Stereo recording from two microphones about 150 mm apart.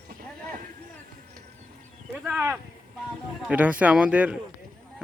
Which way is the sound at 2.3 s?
10° right (ahead or behind).